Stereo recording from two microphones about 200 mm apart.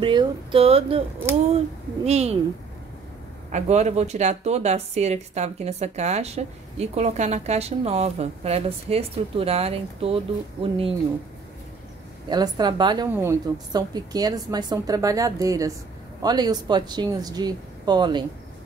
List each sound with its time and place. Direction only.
0.0 s speech: 25° right (ahead or behind)
2.0 s speech: 35° right (ahead or behind)
3.5 s speech: 35° right (ahead or behind)
12.3 s a woman's voice: 20° right (ahead or behind)